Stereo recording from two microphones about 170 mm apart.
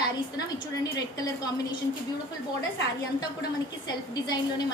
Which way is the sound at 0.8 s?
20° left (ahead or behind).